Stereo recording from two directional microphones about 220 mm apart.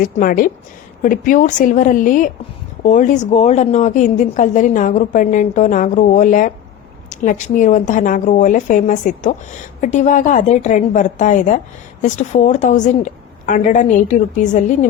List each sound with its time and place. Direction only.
0.0 s a woman's voice: 40° left (ahead or behind)